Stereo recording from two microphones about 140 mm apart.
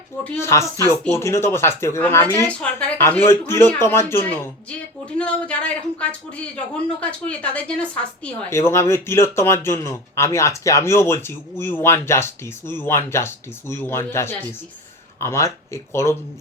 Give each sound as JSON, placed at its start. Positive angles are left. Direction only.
{"t": 0.3, "sound": "speech", "side_deg": 20}
{"t": 2.5, "sound": "speech", "side_deg": 10}